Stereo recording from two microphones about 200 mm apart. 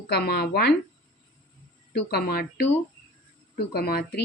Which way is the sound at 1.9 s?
55° left (ahead or behind).